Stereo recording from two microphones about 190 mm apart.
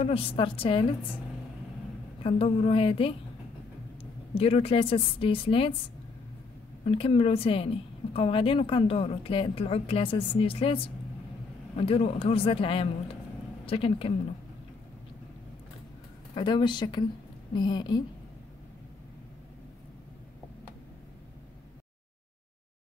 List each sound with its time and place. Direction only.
0.0 s a woman's voice: 30° left (ahead or behind)
2.2 s a woman's voice: 30° left (ahead or behind)
6.8 s a woman's voice: 30° left (ahead or behind)
16.3 s a woman's voice: 25° left (ahead or behind)